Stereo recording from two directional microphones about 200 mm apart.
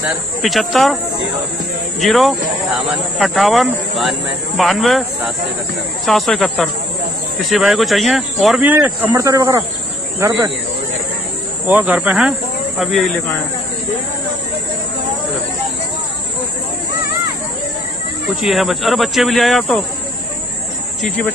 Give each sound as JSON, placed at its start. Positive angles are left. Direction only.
{"t": 0.4, "sound": "speech", "side_deg": 0}
{"t": 2.0, "sound": "speech", "side_deg": 0}
{"t": 11.6, "sound": "speech", "side_deg": -10}
{"t": 18.4, "sound": "speech", "side_deg": 0}